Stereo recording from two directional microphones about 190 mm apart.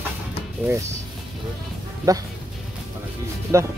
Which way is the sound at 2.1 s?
20° right (ahead or behind).